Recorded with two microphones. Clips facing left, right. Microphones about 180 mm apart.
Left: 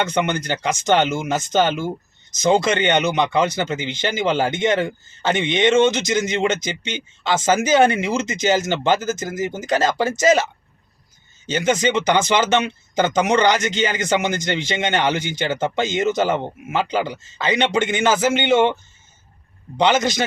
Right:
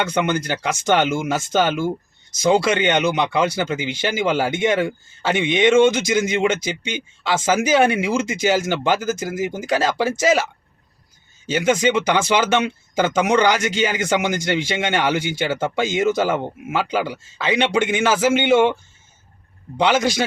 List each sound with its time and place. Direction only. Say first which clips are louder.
0.0 s speech: even; 10° right (ahead or behind)
1.6 s speech: right 1 dB; 20° left (ahead or behind)
2.6 s speech: even; 5° right (ahead or behind)
11.5 s speech: right 1 dB; 5° right (ahead or behind)
20.0 s speech: right 1 dB; 5° right (ahead or behind)